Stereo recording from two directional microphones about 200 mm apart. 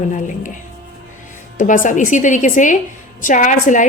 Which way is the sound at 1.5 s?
40° left (ahead or behind).